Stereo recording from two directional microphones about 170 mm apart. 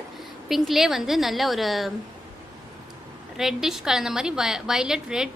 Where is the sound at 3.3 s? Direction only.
5° right (ahead or behind).